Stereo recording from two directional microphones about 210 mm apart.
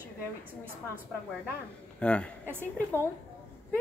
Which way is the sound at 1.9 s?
5° left (ahead or behind).